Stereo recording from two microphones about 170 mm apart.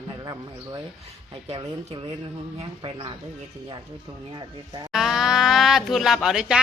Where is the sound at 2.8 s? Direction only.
30° right (ahead or behind).